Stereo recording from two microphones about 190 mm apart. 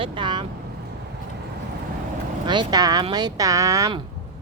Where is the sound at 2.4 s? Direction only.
25° right (ahead or behind).